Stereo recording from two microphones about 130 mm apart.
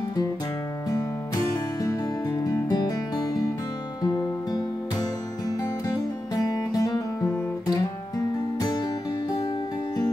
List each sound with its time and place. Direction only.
1.8 s music: 30° left (ahead or behind)
6.4 s guitar: 30° left (ahead or behind)
8.5 s music: 30° left (ahead or behind)